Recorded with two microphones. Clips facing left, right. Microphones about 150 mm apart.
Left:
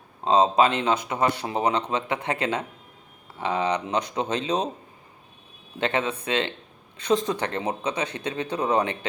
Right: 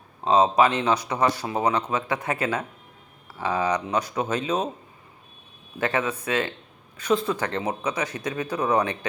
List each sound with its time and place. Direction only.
0.3 s speech: 25° left (ahead or behind)
5.8 s speech: 25° left (ahead or behind)